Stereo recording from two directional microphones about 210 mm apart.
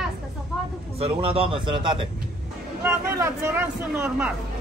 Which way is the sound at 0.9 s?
25° right (ahead or behind).